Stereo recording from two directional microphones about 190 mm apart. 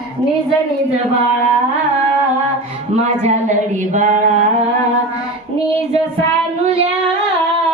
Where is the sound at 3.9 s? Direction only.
40° right (ahead or behind).